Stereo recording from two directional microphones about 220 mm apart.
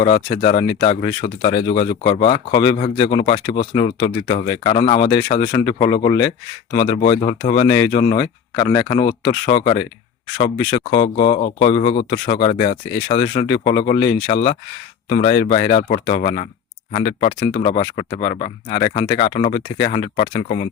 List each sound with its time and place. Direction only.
0.0 s speech: 25° left (ahead or behind)
6.7 s speech: 35° left (ahead or behind)
7.8 s speech: 20° left (ahead or behind)